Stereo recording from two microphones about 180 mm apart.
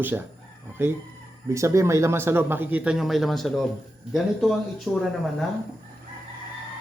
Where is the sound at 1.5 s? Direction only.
15° right (ahead or behind); by 5.1 s centre (ahead or behind).